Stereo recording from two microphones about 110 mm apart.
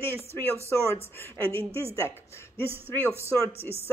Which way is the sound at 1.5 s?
55° right (ahead or behind).